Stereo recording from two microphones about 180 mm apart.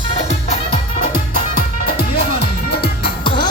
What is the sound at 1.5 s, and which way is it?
Music, 55° left (ahead or behind).